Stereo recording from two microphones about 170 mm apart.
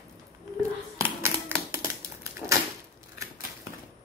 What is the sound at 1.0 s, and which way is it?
Typewriter, 15° right (ahead or behind).